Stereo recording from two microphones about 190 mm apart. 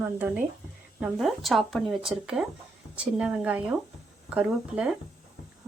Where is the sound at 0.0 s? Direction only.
10° right (ahead or behind).